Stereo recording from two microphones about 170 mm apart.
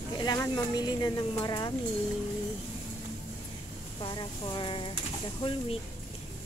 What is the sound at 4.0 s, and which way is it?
Speech, 25° left (ahead or behind).